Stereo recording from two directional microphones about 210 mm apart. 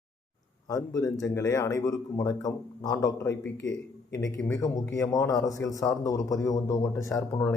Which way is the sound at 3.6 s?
60° left (ahead or behind).